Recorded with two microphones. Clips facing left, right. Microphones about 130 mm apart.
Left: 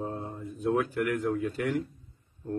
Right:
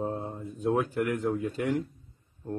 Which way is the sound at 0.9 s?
20° right (ahead or behind).